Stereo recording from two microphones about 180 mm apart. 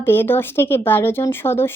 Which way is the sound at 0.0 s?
10° left (ahead or behind).